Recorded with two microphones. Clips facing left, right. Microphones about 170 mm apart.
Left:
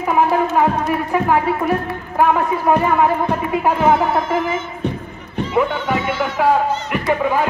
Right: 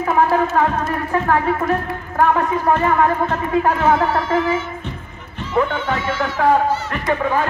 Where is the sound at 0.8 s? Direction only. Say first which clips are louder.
Left 2 dB; 15° left (ahead or behind).